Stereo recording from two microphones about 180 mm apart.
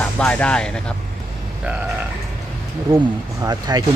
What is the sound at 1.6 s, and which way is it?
Speech, 10° right (ahead or behind).